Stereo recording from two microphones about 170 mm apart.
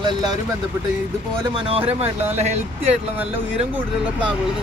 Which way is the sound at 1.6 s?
35° right (ahead or behind).